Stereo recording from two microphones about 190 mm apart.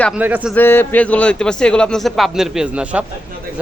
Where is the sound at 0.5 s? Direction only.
10° left (ahead or behind); by 3.0 s 5° right (ahead or behind).